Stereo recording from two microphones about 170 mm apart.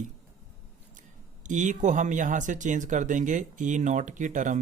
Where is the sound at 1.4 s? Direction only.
45° right (ahead or behind).